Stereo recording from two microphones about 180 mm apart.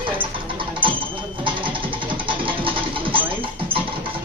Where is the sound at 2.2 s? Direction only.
30° right (ahead or behind).